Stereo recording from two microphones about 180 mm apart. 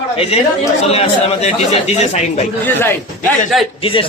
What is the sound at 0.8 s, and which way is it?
Speech, 35° left (ahead or behind).